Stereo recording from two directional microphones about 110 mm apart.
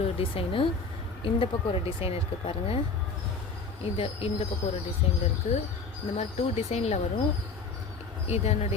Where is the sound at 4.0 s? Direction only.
60° left (ahead or behind).